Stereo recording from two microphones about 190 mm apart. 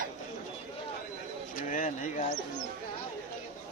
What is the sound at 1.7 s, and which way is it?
Speech, 45° left (ahead or behind).